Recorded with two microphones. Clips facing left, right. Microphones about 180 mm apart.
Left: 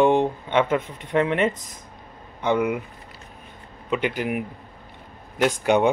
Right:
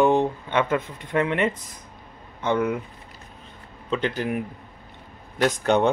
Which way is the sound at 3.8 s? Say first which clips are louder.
Left 1 dB; 15° left (ahead or behind).